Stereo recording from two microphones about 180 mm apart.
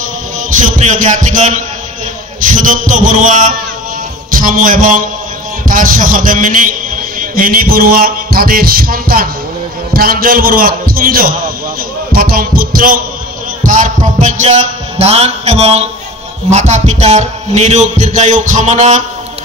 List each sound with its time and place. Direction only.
0.5 s a man's voice: 40° right (ahead or behind)
4.3 s music: 50° right (ahead or behind)
5.7 s a man's voice: 50° right (ahead or behind)
13.7 s music: 45° right (ahead or behind)
16.4 s a man's voice: 40° right (ahead or behind)